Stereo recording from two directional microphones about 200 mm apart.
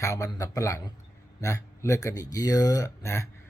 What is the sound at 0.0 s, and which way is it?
Speech, 15° left (ahead or behind).